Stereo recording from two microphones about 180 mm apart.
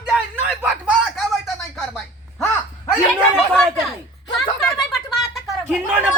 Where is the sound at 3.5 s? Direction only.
Centre (ahead or behind).